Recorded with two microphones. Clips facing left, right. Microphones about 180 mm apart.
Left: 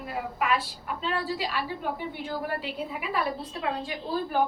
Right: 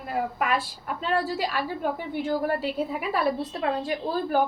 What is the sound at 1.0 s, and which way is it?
A woman's voice, 45° right (ahead or behind).